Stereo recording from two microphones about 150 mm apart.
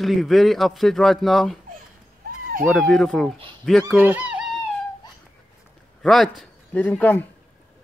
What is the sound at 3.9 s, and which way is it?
Speech, 10° right (ahead or behind).